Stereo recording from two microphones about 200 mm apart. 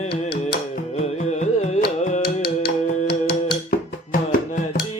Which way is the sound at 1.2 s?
35° left (ahead or behind).